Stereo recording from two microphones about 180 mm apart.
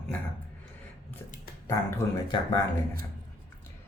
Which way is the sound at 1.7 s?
20° left (ahead or behind).